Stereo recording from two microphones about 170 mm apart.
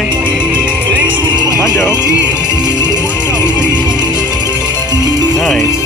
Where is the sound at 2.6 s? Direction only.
25° right (ahead or behind).